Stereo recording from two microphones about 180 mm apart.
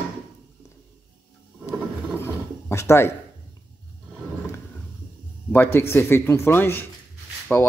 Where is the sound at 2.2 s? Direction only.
15° left (ahead or behind).